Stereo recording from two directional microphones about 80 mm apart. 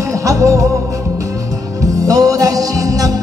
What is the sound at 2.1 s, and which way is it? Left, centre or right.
Music, right.